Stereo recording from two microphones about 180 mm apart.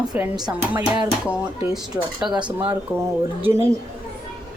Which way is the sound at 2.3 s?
25° right (ahead or behind).